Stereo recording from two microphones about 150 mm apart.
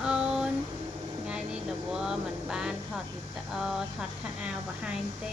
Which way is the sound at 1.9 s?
5° right (ahead or behind).